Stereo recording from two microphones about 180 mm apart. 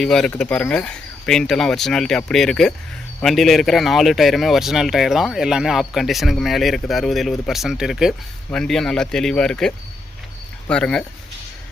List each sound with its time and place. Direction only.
0.0 s speech: 5° left (ahead or behind)